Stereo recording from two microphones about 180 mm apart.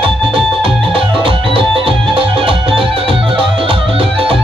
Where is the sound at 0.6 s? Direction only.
30° right (ahead or behind).